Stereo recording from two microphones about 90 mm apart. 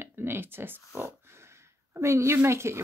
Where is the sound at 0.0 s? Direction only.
25° right (ahead or behind).